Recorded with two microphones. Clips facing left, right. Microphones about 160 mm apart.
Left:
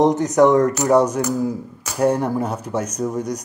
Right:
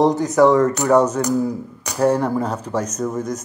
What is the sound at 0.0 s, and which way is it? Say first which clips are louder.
A man's voice: even; 20° left (ahead or behind).